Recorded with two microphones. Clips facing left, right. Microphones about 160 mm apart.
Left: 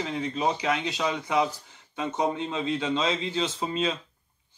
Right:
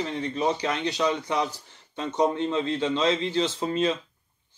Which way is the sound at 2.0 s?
5° left (ahead or behind).